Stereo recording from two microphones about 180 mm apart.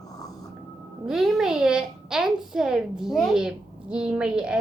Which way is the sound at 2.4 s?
5° right (ahead or behind).